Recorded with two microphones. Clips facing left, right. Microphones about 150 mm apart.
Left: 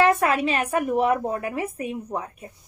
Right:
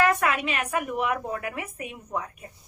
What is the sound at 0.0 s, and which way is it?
A woman's voice, 30° left (ahead or behind).